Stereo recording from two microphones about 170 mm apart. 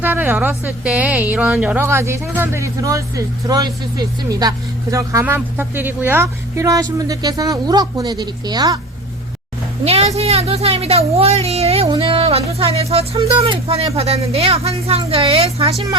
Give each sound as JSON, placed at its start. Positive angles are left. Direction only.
{"t": 0.0, "sound": "speech", "side_deg": -10}
{"t": 9.8, "sound": "speech", "side_deg": -40}